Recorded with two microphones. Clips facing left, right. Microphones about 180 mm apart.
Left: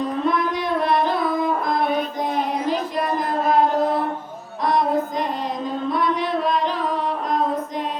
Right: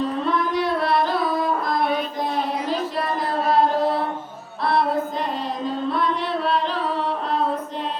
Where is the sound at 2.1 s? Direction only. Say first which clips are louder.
Left 1 dB; 15° left (ahead or behind).